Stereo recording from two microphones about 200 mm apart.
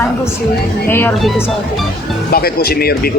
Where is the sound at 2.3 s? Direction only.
50° left (ahead or behind).